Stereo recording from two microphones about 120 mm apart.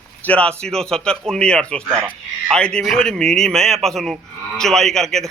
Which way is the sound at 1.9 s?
20° right (ahead or behind).